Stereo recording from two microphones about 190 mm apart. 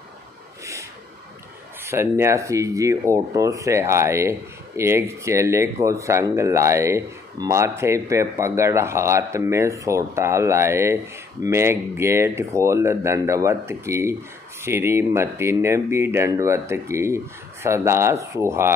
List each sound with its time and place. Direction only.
1.9 s speech: 15° right (ahead or behind)